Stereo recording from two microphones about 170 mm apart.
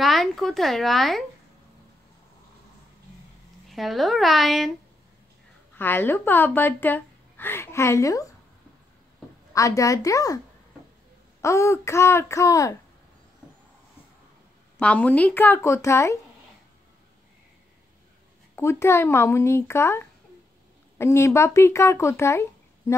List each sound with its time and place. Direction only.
0.0 s speech: centre (ahead or behind)
3.6 s speech: centre (ahead or behind)
5.8 s a woman's voice: 10° left (ahead or behind)
9.5 s a woman's voice: 20° left (ahead or behind)
11.4 s speech: 15° left (ahead or behind)
14.8 s speech: 10° left (ahead or behind)
18.6 s speech: 15° left (ahead or behind)